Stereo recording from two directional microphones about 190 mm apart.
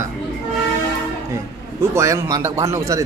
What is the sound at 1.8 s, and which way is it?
A man's voice, 15° right (ahead or behind).